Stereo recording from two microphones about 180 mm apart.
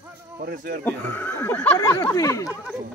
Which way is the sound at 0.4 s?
55° right (ahead or behind).